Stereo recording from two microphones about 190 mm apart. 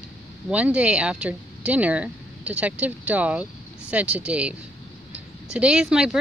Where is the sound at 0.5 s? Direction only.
5° right (ahead or behind).